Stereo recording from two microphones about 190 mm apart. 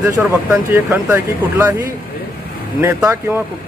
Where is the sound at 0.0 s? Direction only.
10° right (ahead or behind).